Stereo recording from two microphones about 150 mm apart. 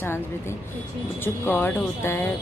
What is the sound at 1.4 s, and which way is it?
Speech, 15° left (ahead or behind).